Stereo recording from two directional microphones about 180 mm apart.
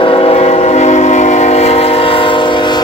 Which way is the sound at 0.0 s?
30° left (ahead or behind).